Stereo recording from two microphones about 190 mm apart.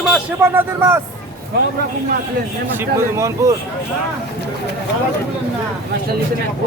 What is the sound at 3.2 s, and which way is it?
Speech, 15° right (ahead or behind).